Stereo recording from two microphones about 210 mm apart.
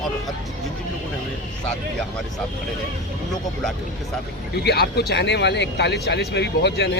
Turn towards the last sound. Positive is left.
turn(degrees=55)  # may be behind; listen again after turning